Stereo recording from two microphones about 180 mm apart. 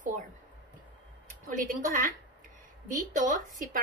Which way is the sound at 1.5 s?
45° right (ahead or behind).